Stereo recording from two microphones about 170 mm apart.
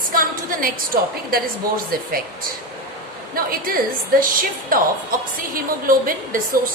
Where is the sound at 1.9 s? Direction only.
55° right (ahead or behind).